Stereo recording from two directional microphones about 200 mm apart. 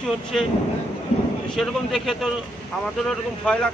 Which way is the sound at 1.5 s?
Centre (ahead or behind).